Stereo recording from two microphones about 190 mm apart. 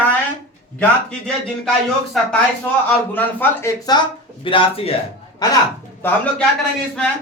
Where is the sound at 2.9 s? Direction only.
10° left (ahead or behind).